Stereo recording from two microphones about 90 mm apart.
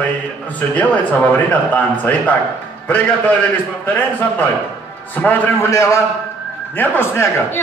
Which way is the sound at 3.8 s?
20° left (ahead or behind).